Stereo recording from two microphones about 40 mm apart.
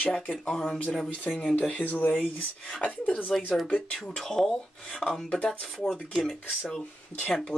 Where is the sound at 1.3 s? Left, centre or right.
Left.